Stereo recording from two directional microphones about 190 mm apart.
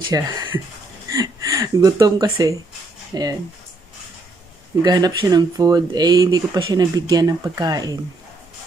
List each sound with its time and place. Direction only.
0.1 s speech: 20° right (ahead or behind)
4.8 s speech: 20° right (ahead or behind)